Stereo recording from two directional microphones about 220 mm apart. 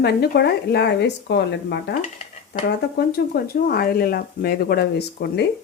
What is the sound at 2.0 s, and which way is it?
Dishes, 30° left (ahead or behind).